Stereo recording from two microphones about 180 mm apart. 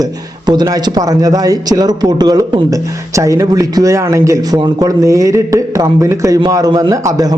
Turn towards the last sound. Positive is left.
turn(degrees=-20)  # may be behind; listen again after turning